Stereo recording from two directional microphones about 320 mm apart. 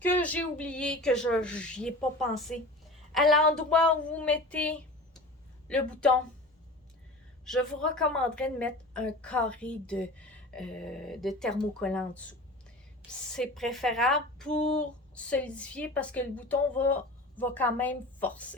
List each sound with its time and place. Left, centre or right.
0.0 s speech: centre
7.4 s speech: centre